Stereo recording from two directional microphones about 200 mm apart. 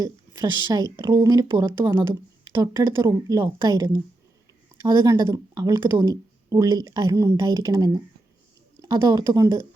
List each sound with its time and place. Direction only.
0.0 s a woman's voice: 20° right (ahead or behind)